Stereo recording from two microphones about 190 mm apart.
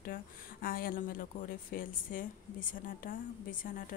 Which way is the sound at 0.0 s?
50° left (ahead or behind).